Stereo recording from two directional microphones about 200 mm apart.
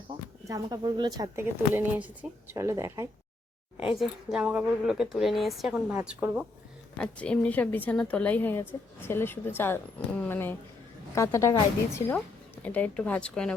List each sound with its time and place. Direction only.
0.4 s speech: 20° right (ahead or behind)
3.9 s a woman's voice: 5° right (ahead or behind)
7.0 s a woman's voice: 5° left (ahead or behind)
12.6 s a woman's voice: 5° left (ahead or behind)